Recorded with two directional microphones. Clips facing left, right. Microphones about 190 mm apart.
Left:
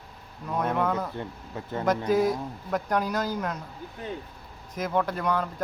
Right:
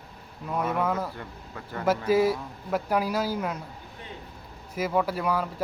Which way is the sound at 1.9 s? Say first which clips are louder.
Right 1 dB; 5° right (ahead or behind).